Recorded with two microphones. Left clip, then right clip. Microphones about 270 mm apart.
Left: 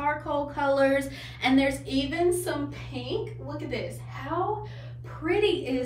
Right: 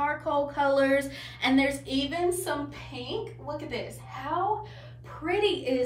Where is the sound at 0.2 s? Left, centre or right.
Centre.